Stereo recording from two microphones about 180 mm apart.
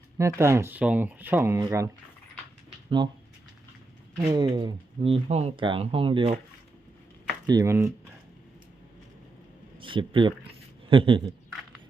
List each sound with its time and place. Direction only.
0.2 s speech: 15° right (ahead or behind)
4.2 s speech: 20° right (ahead or behind)
7.4 s speech: 20° right (ahead or behind)
9.7 s speech: 30° right (ahead or behind)